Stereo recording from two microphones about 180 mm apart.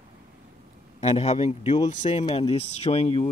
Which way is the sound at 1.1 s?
40° left (ahead or behind).